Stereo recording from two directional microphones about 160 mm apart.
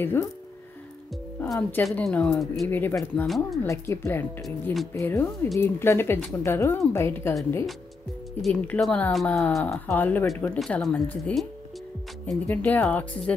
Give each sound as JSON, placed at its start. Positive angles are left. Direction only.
{"t": 0.0, "sound": "speech", "side_deg": 15}
{"t": 1.5, "sound": "speech", "side_deg": 5}
{"t": 2.7, "sound": "speech", "side_deg": 15}
{"t": 3.3, "sound": "speech", "side_deg": 0}
{"t": 3.6, "sound": "speech", "side_deg": 15}
{"t": 4.5, "sound": "speech", "side_deg": 0}
{"t": 4.9, "sound": "speech", "side_deg": 15}
{"t": 8.4, "sound": "speech", "side_deg": 5}